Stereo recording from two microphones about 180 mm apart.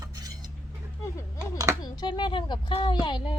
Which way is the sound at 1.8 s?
25° left (ahead or behind).